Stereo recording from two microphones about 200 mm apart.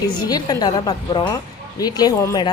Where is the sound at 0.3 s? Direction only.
20° left (ahead or behind).